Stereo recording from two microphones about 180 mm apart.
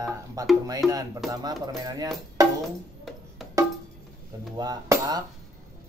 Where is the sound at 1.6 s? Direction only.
20° right (ahead or behind).